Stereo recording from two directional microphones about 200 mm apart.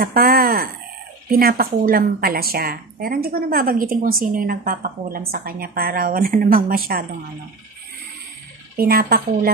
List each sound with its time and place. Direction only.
0.0 s a woman's voice: 45° right (ahead or behind)
8.7 s a woman's voice: 45° right (ahead or behind)